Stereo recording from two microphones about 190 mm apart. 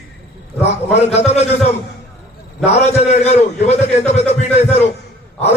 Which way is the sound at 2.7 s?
35° left (ahead or behind).